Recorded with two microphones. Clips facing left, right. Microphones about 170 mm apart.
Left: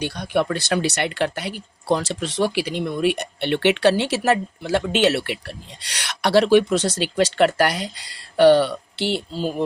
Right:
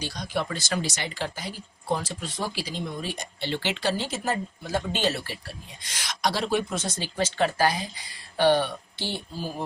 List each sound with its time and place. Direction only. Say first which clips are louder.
0.0 s speech: left 8 dB; 60° left (ahead or behind); by 9.6 s 75° left (ahead or behind)